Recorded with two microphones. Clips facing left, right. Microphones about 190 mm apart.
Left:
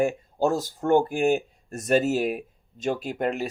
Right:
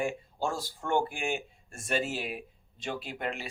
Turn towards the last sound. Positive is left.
turn(degrees=45)  # may be behind; listen again after turning